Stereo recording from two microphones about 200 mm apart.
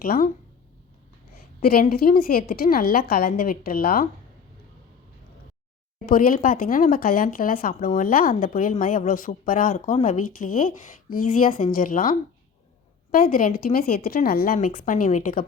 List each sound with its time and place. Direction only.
0.0 s speech: 45° left (ahead or behind)
1.6 s speech: 50° left (ahead or behind)
6.1 s speech: 45° left (ahead or behind)